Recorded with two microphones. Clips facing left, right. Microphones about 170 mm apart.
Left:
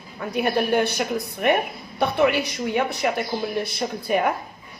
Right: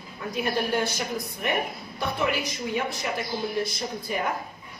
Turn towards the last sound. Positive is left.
turn(degrees=60)  # may be behind; listen again after turning